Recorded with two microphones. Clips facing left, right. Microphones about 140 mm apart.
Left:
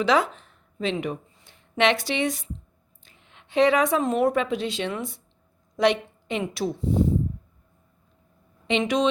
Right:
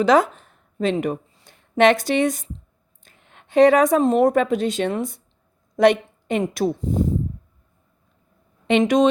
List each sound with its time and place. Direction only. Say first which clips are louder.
0.0 s a woman's voice: right 5 dB; 45° right (ahead or behind)
8.6 s a woman's voice: right 6 dB; 50° right (ahead or behind)